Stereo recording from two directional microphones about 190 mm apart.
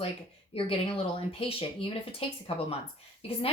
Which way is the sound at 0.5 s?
30° left (ahead or behind).